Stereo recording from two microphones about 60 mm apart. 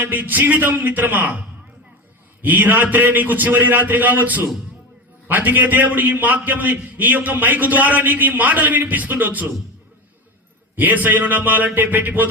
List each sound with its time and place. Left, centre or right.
0.0 s a man's voice: right
10.8 s a man's voice: right